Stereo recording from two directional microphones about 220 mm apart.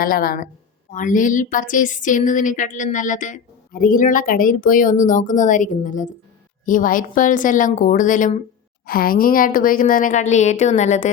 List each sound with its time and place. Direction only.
0.0 s speech: 40° left (ahead or behind)